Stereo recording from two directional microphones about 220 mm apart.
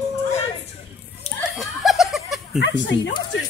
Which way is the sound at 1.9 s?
Centre (ahead or behind).